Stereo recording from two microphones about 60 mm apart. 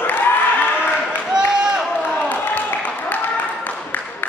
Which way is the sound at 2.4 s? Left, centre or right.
Left.